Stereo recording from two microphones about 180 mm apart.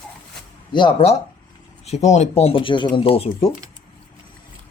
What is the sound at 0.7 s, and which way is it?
Speech, 25° left (ahead or behind).